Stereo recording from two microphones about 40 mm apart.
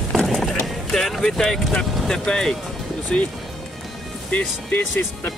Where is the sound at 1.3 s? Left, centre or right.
Centre.